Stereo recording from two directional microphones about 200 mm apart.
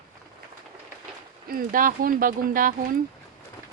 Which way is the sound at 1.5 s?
45° right (ahead or behind).